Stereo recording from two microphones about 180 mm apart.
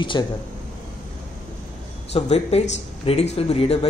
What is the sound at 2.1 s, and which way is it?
Speech, 35° left (ahead or behind).